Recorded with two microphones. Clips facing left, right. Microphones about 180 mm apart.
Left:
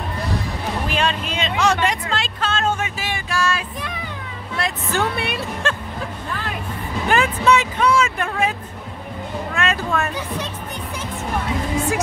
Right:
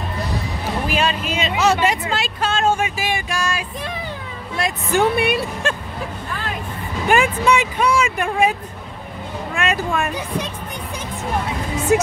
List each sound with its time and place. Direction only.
0.8 s speech: 5° right (ahead or behind)
7.1 s speech: 10° right (ahead or behind)
11.9 s speech: 25° right (ahead or behind)